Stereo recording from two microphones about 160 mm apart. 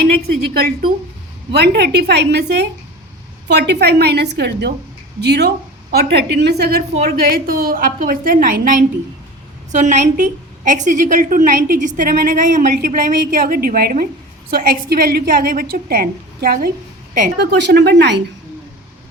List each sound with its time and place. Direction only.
1.5 s a woman's voice: 85° right
7.0 s a woman's voice: 70° right (ahead or behind); by 18.1 s 90° right